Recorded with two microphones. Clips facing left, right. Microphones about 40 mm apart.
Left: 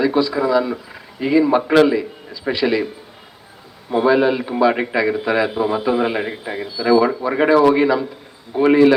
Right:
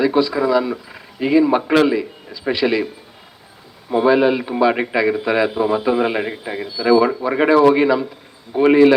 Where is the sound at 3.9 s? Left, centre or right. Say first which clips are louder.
Right 1 dB; centre.